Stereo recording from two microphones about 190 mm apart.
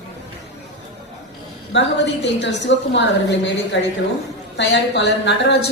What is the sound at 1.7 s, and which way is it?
A woman's voice, 70° left (ahead or behind).